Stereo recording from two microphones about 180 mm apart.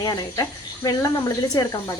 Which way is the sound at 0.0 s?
25° left (ahead or behind).